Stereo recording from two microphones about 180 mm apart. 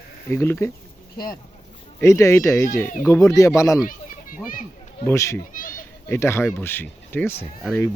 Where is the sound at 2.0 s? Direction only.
15° left (ahead or behind).